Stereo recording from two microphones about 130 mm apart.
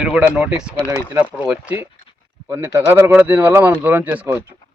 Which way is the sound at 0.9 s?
20° right (ahead or behind).